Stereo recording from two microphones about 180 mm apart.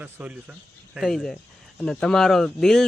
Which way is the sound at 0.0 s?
10° right (ahead or behind).